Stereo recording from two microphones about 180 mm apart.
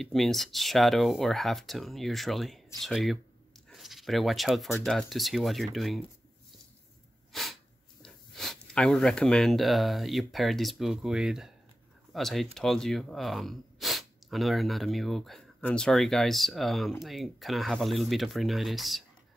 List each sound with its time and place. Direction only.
0.0 s speech: centre (ahead or behind)
8.0 s speech: 5° left (ahead or behind)